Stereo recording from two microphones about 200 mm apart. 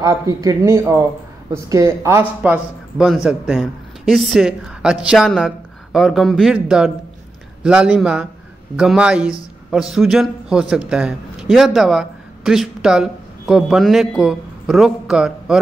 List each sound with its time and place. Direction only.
0.0 s a man's voice: 15° right (ahead or behind)